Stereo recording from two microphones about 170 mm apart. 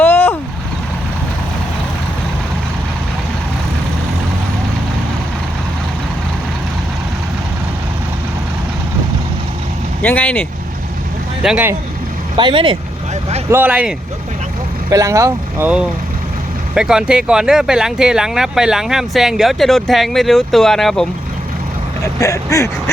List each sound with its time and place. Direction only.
0.0 s vehicle: 15° left (ahead or behind)
10.0 s speech: 10° left (ahead or behind)
11.4 s speech: 5° right (ahead or behind)
12.4 s speech: 30° right (ahead or behind)
13.5 s speech: 10° right (ahead or behind)
22.0 s speech: 20° left (ahead or behind)